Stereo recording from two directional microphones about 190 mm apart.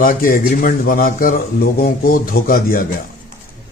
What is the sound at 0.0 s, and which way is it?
A man's voice, 45° left (ahead or behind).